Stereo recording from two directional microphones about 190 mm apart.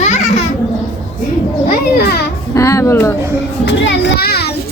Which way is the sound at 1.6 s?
55° left (ahead or behind).